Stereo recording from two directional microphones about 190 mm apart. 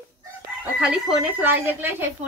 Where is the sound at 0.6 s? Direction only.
5° right (ahead or behind).